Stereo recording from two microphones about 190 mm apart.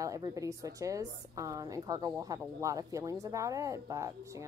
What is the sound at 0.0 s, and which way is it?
A woman's voice, 20° right (ahead or behind).